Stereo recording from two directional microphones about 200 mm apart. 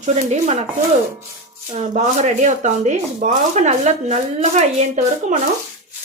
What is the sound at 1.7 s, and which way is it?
Speech, 35° right (ahead or behind).